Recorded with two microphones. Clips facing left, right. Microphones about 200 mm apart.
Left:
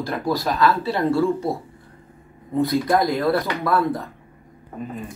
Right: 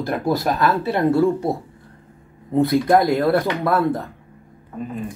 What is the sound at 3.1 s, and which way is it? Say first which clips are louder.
Speech: right 3 dB; 50° right (ahead or behind).